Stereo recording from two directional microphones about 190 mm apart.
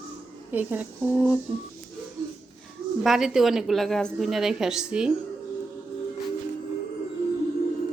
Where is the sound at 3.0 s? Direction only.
Centre (ahead or behind).